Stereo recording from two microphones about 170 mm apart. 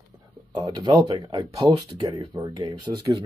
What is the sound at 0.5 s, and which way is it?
Speech, 25° right (ahead or behind).